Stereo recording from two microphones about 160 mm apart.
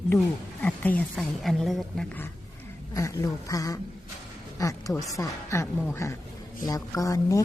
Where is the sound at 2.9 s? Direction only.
20° left (ahead or behind).